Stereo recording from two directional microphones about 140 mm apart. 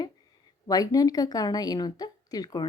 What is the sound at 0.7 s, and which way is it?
Speech, 25° left (ahead or behind).